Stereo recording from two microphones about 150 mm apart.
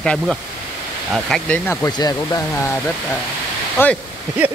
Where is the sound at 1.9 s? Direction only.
25° left (ahead or behind).